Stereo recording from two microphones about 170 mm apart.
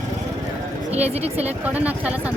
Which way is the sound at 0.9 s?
40° right (ahead or behind).